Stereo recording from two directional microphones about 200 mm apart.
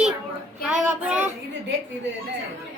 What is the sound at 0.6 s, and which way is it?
Child singing, 5° right (ahead or behind).